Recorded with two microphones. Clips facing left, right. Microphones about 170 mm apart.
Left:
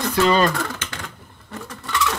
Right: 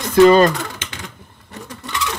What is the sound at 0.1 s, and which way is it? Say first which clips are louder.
Speech: right 8 dB; 45° right (ahead or behind).